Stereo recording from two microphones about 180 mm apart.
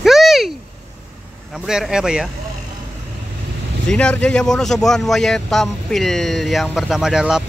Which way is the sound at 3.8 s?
5° left (ahead or behind).